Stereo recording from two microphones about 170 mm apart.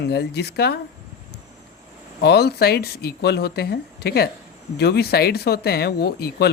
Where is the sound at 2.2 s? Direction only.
75° left (ahead or behind).